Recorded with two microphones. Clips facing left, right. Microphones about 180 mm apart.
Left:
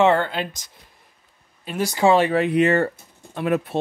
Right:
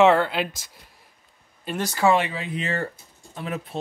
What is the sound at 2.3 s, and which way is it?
Speech, 65° left (ahead or behind).